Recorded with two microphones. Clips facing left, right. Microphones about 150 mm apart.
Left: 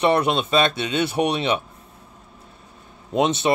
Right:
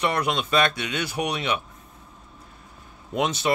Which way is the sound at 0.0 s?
25° left (ahead or behind).